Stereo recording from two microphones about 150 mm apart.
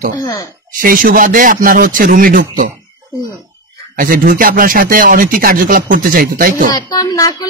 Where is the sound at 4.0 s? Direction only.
65° right (ahead or behind).